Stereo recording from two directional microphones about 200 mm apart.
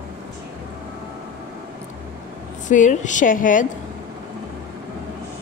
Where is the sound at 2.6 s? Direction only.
40° left (ahead or behind).